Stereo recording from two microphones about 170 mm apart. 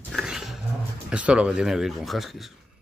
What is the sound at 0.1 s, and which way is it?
Roaring cats, 5° right (ahead or behind).